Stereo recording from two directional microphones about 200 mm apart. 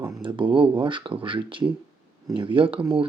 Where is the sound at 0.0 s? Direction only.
20° right (ahead or behind).